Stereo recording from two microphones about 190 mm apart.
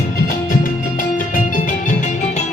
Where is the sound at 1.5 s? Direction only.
40° left (ahead or behind).